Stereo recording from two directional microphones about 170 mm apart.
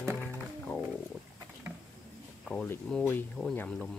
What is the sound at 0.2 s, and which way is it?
Music, 10° left (ahead or behind).